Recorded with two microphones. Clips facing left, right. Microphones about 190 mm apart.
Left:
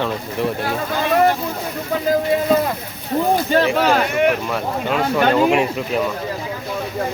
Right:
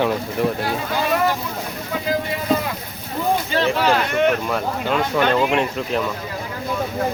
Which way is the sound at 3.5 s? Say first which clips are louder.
Left 2 dB; 45° left (ahead or behind).